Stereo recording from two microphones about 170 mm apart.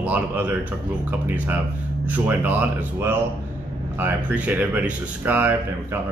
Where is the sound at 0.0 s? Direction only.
10° right (ahead or behind).